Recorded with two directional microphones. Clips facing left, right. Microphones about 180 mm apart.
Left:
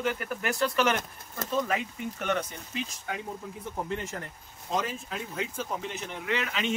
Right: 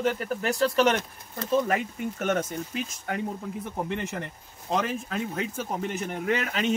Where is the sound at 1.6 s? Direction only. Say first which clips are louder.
Right 4 dB; 45° right (ahead or behind).